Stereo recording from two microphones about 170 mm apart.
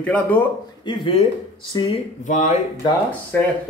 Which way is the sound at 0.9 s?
30° left (ahead or behind).